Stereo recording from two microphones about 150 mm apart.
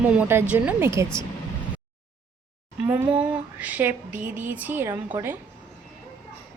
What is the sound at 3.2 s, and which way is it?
A woman's voice, 10° right (ahead or behind).